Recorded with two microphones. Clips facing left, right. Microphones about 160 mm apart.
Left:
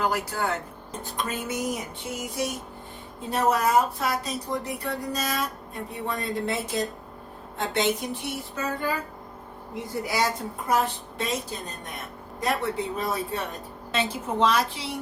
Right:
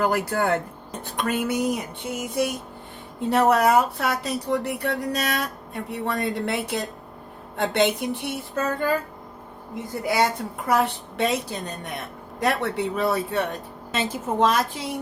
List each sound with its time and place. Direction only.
0.0 s a woman's voice: 55° right (ahead or behind)
1.0 s a woman's voice: 70° right (ahead or behind)
3.2 s a woman's voice: 70° right (ahead or behind)
9.7 s a woman's voice: 55° right (ahead or behind); by 11.3 s 70° right (ahead or behind)
12.4 s speech: 70° right (ahead or behind)
13.9 s a woman's voice: 45° right (ahead or behind)